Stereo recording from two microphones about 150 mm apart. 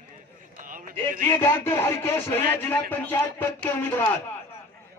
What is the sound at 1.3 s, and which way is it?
A man's voice, 15° left (ahead or behind).